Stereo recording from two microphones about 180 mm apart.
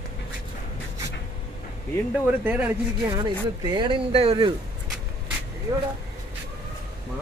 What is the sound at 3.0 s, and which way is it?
Speech, 25° right (ahead or behind).